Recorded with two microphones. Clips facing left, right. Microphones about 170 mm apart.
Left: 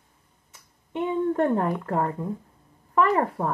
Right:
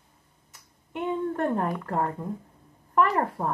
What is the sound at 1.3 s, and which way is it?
Speech, 10° left (ahead or behind).